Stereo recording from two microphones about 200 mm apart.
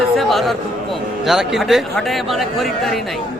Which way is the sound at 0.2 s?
Centre (ahead or behind).